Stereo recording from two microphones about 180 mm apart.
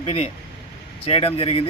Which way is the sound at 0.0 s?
35° left (ahead or behind).